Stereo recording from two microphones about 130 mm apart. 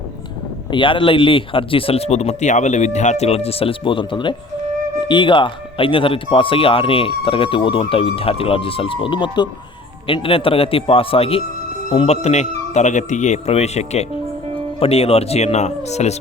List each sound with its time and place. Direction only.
0.7 s speech: 40° left (ahead or behind); by 16.1 s 60° left (ahead or behind)